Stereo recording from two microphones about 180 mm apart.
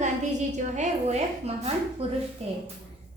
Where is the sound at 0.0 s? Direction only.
40° right (ahead or behind).